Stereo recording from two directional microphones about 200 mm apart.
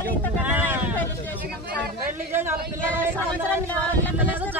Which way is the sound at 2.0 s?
10° right (ahead or behind).